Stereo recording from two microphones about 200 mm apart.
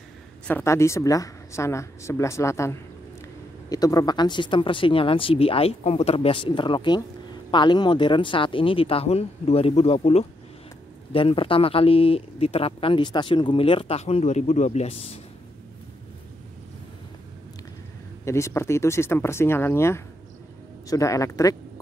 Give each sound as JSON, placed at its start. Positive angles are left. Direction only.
{"t": 0.5, "sound": "speech", "side_deg": 10}
{"t": 18.2, "sound": "speech", "side_deg": 15}